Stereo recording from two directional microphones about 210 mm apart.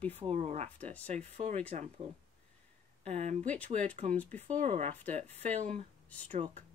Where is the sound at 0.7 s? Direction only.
5° left (ahead or behind).